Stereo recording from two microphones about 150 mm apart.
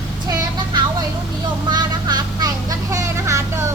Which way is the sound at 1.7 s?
30° right (ahead or behind).